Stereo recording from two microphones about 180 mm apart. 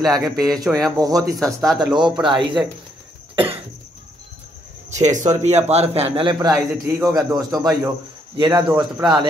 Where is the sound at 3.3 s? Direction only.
30° right (ahead or behind).